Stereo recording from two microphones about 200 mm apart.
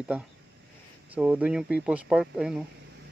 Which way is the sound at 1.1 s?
5° right (ahead or behind).